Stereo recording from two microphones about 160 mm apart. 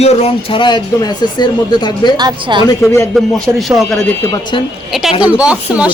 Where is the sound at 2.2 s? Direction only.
30° right (ahead or behind).